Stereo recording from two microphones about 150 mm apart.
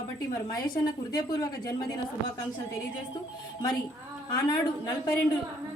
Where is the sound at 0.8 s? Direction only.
25° left (ahead or behind).